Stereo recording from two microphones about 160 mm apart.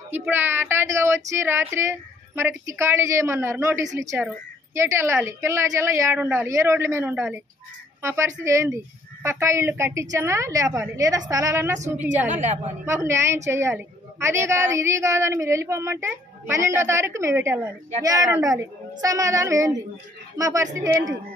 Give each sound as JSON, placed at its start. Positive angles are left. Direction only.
{"t": 0.1, "sound": "a woman's voice", "side_deg": -10}
{"t": 12.3, "sound": "a woman's voice", "side_deg": -45}
{"t": 12.8, "sound": "a woman's voice", "side_deg": -15}